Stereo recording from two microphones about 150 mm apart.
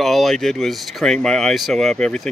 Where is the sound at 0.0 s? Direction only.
Centre (ahead or behind).